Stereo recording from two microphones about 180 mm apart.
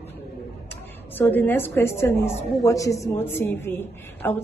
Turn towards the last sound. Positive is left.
turn(degrees=10)  # may be behind; listen again after turning